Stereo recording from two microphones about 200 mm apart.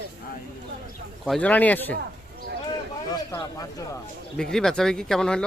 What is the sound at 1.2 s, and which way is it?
Speech, 5° left (ahead or behind).